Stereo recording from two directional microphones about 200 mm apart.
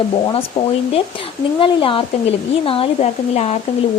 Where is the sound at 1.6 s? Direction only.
25° left (ahead or behind).